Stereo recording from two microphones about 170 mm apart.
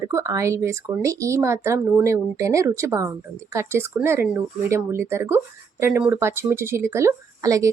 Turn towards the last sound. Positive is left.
turn(degrees=-20)  # may be behind; listen again after turning